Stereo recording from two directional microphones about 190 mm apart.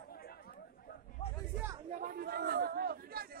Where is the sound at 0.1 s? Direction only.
55° left (ahead or behind).